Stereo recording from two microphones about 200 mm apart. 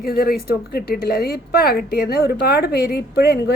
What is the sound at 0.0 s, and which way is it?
A woman's voice, 50° left (ahead or behind).